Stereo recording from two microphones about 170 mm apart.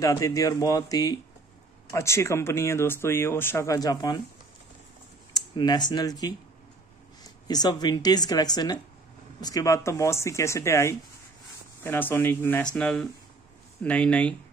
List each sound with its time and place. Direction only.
0.0 s speech: 20° left (ahead or behind)
5.3 s speech: 25° left (ahead or behind)
7.4 s speech: 25° left (ahead or behind); by 14.3 s 5° left (ahead or behind)